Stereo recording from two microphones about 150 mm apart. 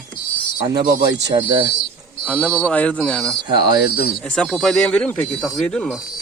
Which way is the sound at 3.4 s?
30° right (ahead or behind).